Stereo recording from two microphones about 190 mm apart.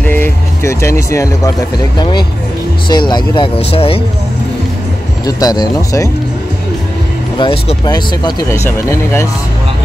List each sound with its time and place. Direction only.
0.0 s vehicle: 10° left (ahead or behind)
2.0 s speech: 25° left (ahead or behind)
5.2 s speech: 20° left (ahead or behind)
7.3 s speech: 25° left (ahead or behind)